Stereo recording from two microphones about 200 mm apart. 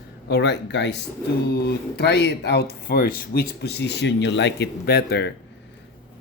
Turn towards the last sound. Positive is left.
turn(degrees=55)  # may be behind; listen again after turning